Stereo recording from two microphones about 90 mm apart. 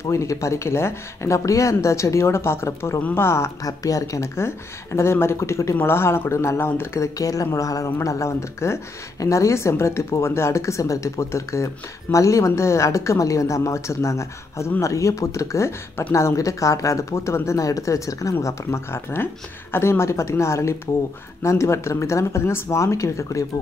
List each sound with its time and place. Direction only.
0.0 s speech: 35° left (ahead or behind)
3.0 s speech: 15° left (ahead or behind)
3.3 s speech: 30° left (ahead or behind)